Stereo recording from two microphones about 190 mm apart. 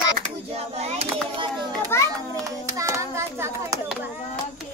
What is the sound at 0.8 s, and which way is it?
Child singing, 30° right (ahead or behind).